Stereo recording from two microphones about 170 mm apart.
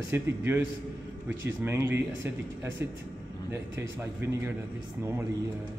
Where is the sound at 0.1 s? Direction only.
15° right (ahead or behind).